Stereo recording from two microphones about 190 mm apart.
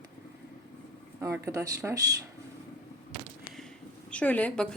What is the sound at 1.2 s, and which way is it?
Speech, 15° right (ahead or behind).